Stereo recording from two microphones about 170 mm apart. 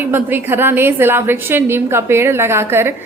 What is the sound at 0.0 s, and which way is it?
A woman's voice, 10° right (ahead or behind).